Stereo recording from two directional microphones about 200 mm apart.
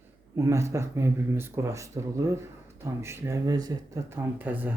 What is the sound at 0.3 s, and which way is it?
Speech, 15° right (ahead or behind).